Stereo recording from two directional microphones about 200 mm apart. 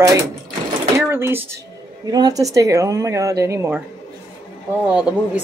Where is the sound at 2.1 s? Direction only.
20° right (ahead or behind).